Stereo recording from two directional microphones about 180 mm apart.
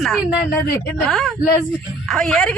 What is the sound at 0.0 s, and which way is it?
A woman's voice, centre (ahead or behind).